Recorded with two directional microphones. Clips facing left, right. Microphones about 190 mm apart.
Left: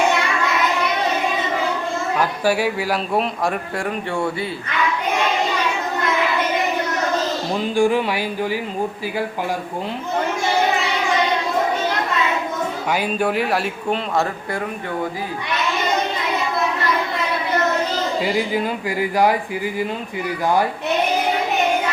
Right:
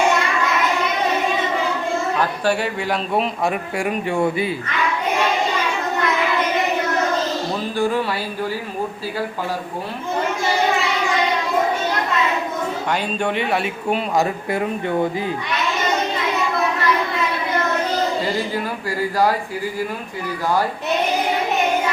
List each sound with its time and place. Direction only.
2.1 s a man's voice: 10° left (ahead or behind)
3.8 s speech: 15° right (ahead or behind)
7.5 s a man's voice: 15° left (ahead or behind)
12.9 s speech: 5° left (ahead or behind)
13.9 s speech: 15° right (ahead or behind)
18.2 s a man's voice: 15° left (ahead or behind)